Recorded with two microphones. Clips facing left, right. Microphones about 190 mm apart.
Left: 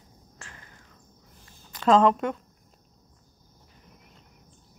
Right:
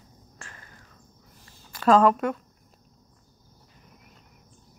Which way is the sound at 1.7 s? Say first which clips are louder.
Right 1 dB; 20° left (ahead or behind).